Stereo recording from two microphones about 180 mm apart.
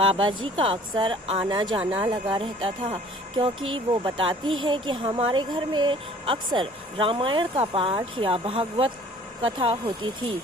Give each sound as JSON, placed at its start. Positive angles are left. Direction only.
{"t": 0.0, "sound": "speech", "side_deg": -30}